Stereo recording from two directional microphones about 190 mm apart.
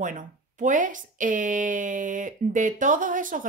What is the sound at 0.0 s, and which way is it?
Speech, 45° right (ahead or behind).